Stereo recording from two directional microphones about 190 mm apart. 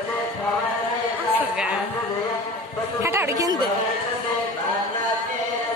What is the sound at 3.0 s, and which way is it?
Chatter, 15° right (ahead or behind).